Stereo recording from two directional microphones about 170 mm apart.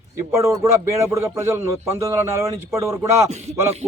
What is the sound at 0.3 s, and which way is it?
Speech, 15° right (ahead or behind).